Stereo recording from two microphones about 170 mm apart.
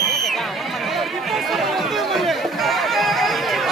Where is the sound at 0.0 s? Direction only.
Centre (ahead or behind).